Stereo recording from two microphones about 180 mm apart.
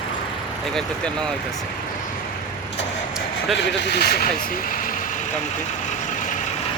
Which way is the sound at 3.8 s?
65° left (ahead or behind).